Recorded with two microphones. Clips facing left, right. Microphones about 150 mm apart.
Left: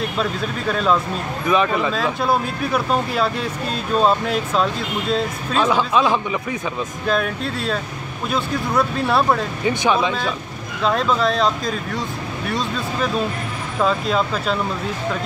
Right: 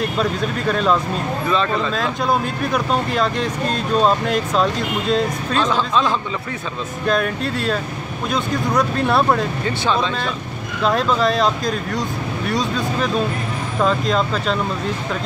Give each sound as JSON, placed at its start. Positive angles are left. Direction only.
{"t": 0.2, "sound": "speech", "side_deg": 0}
{"t": 1.5, "sound": "speech", "side_deg": 15}
{"t": 2.0, "sound": "speech", "side_deg": 5}
{"t": 7.1, "sound": "speech", "side_deg": 0}
{"t": 9.7, "sound": "speech", "side_deg": 15}